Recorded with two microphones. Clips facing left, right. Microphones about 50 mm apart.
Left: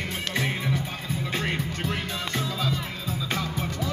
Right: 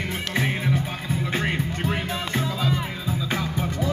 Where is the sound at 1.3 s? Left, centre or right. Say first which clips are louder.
Right 2 dB; centre.